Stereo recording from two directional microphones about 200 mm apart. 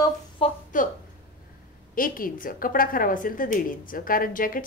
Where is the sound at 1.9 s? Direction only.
45° left (ahead or behind).